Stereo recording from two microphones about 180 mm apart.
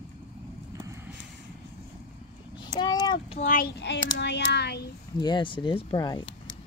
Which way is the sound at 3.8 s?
70° left (ahead or behind).